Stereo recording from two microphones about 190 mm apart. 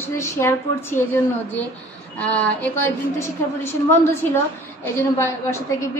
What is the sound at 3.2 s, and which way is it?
A woman's voice, 10° left (ahead or behind).